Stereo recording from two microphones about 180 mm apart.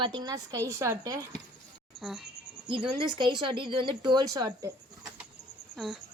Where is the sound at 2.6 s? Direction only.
30° right (ahead or behind).